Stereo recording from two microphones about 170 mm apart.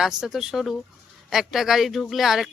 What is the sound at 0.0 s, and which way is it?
Speech, 5° right (ahead or behind).